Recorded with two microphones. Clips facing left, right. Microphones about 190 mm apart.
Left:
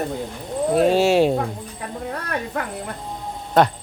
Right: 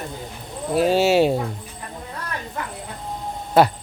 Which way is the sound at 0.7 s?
Centre (ahead or behind).